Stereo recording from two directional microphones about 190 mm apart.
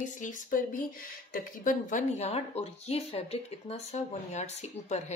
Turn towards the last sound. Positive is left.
turn(degrees=35)  # may be behind; listen again after turning